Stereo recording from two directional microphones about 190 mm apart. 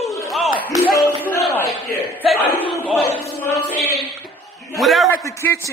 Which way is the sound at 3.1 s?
10° left (ahead or behind).